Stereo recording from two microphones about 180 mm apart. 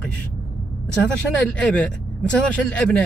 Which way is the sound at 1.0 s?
5° left (ahead or behind).